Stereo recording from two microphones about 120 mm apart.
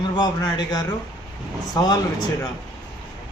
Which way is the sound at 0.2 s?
35° left (ahead or behind).